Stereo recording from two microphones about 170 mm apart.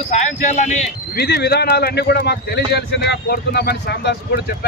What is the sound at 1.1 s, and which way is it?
Speech, 70° left (ahead or behind).